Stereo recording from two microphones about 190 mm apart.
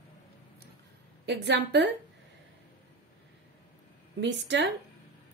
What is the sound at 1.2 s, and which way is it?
Speech, 65° right (ahead or behind).